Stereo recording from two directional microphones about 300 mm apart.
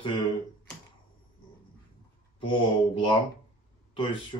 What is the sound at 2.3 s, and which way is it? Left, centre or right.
Speech, centre.